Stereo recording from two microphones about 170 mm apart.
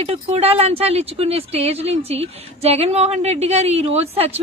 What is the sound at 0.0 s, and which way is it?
Speech, 35° right (ahead or behind).